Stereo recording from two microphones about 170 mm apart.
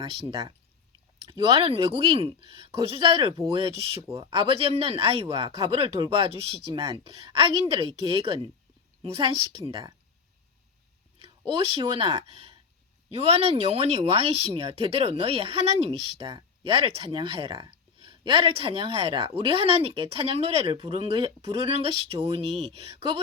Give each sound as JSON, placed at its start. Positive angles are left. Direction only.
{"t": 0.0, "sound": "speech", "side_deg": -30}
{"t": 11.2, "sound": "speech", "side_deg": -35}